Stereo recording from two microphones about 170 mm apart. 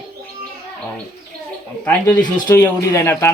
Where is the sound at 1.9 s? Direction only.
10° left (ahead or behind).